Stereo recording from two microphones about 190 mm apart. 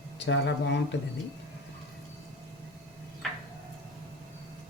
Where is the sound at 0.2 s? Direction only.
70° left (ahead or behind).